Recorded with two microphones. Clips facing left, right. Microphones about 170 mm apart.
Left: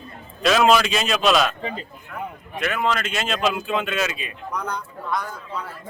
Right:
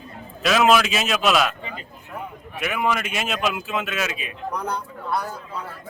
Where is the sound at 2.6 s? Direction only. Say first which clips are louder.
Even; 10° right (ahead or behind).